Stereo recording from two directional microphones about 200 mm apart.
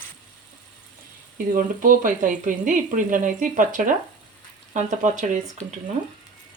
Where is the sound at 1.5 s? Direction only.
45° right (ahead or behind).